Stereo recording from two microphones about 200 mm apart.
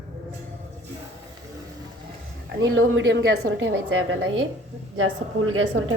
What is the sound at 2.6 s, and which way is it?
A woman's voice, 85° right.